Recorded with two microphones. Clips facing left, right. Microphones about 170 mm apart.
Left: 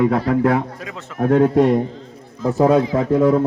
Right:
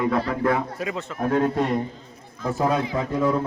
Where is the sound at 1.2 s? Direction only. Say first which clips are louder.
Left 7 dB; 65° left (ahead or behind).